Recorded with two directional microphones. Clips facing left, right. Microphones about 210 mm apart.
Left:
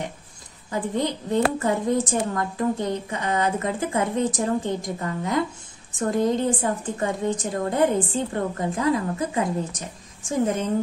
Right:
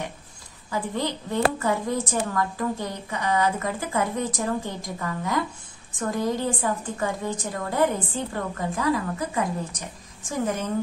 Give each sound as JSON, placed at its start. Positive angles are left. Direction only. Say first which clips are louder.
{"t": 0.7, "sound": "a woman's voice", "louder": "left 3 dB", "side_deg": 20}